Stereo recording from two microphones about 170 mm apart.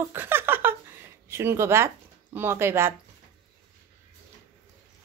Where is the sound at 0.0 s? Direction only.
15° right (ahead or behind).